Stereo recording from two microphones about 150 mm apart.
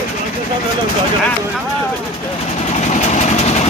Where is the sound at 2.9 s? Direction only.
50° left (ahead or behind).